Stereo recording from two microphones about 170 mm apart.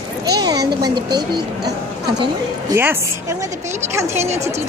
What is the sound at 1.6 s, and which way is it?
Speech, 70° right (ahead or behind).